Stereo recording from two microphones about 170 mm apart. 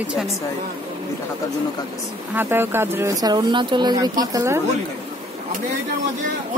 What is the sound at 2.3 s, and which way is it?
Speech, 15° right (ahead or behind).